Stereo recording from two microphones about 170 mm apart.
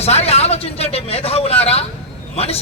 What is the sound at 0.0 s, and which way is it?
A man's voice, 40° left (ahead or behind).